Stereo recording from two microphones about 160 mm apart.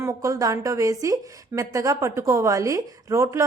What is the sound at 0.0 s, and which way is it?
A woman's voice, 20° right (ahead or behind).